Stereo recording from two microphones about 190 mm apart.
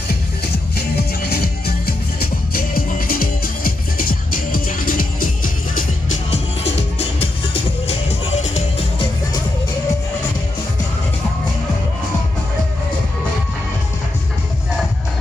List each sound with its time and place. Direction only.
0.7 s music: 55° left (ahead or behind)
6.3 s music: 35° left (ahead or behind)